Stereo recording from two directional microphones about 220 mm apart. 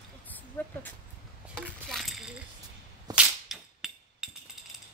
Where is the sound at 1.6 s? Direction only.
Centre (ahead or behind).